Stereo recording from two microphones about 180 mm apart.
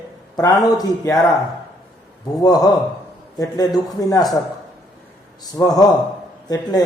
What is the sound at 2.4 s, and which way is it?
A man's voice, 20° left (ahead or behind).